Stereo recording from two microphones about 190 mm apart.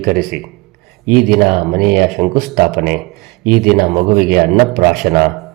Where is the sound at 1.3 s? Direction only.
50° right (ahead or behind).